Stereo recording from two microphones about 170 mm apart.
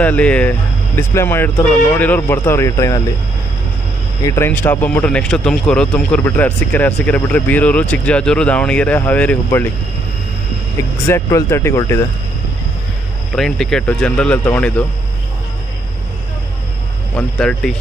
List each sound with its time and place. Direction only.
0.0 s speech: 10° left (ahead or behind)
4.3 s speech: 10° left (ahead or behind)
11.1 s speech: 20° left (ahead or behind)
13.4 s speech: centre (ahead or behind)
17.1 s speech: 5° left (ahead or behind)